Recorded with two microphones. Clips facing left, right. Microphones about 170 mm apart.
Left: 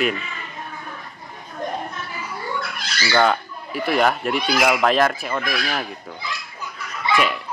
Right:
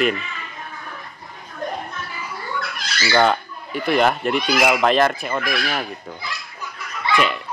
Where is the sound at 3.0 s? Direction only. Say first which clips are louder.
Right 1 dB; 5° right (ahead or behind).